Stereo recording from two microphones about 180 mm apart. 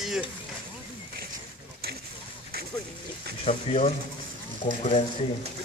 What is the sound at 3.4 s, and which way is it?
Speech, 35° left (ahead or behind).